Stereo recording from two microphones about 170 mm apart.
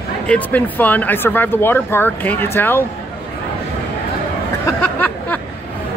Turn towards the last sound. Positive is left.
turn(degrees=10)  # may be behind; listen again after turning